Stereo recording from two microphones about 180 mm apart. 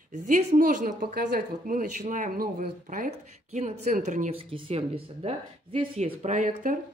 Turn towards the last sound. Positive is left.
turn(degrees=-45)  # may be behind; listen again after turning